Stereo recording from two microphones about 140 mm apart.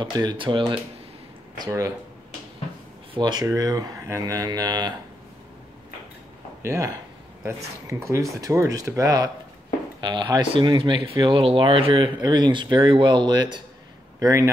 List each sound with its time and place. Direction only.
0.0 s speech: 30° right (ahead or behind)
1.6 s speech: 25° right (ahead or behind)
3.2 s speech: 30° right (ahead or behind)
6.6 s speech: 20° right (ahead or behind)
14.2 s speech: 20° right (ahead or behind)